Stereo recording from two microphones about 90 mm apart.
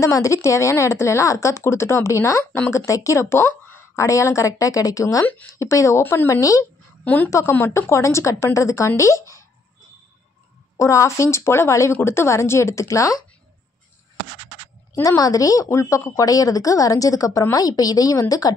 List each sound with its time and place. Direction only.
0.0 s a woman's voice: 35° left (ahead or behind)
7.5 s a woman's voice: 25° left (ahead or behind)
10.8 s a woman's voice: 35° left (ahead or behind)
15.0 s a woman's voice: 40° left (ahead or behind)